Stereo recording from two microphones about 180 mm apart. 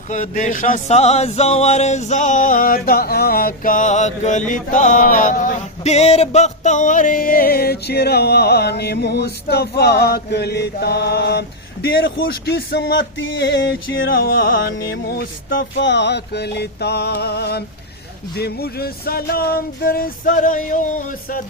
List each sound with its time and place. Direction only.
0.1 s a sound: 40° left (ahead or behind)
5.8 s music: 35° left (ahead or behind); by 15.5 s 55° left (ahead or behind)
15.5 s music: 75° left (ahead or behind); by 21.4 s 50° left (ahead or behind)